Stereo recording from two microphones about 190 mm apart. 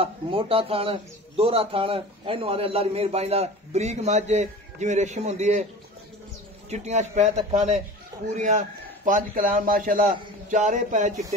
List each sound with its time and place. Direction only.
0.0 s a man's voice: 30° right (ahead or behind)
6.7 s a man's voice: 35° right (ahead or behind)